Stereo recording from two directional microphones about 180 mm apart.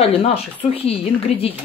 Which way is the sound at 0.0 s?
35° left (ahead or behind).